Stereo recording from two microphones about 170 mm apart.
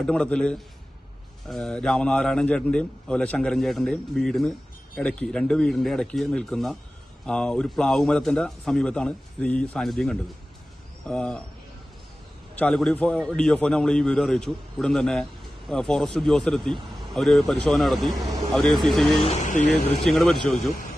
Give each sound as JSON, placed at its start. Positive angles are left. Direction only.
{"t": 0.0, "sound": "a man's voice", "side_deg": 5}
{"t": 12.5, "sound": "a man's voice", "side_deg": 5}
{"t": 19.2, "sound": "speech", "side_deg": 45}
{"t": 19.6, "sound": "a man's voice", "side_deg": 0}